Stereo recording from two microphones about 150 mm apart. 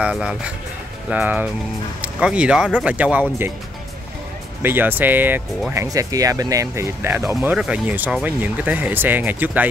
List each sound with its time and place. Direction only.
0.0 s speech: 5° right (ahead or behind)
4.6 s speech: 15° right (ahead or behind)
7.3 s speech: 5° right (ahead or behind)